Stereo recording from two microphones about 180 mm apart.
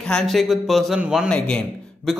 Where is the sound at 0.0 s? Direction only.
5° left (ahead or behind).